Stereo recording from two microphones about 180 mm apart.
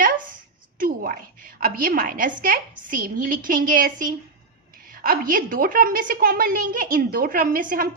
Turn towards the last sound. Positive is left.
turn(degrees=-50)  # may be behind; listen again after turning